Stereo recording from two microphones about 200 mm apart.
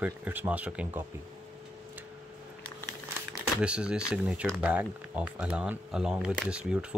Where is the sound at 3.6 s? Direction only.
5° right (ahead or behind).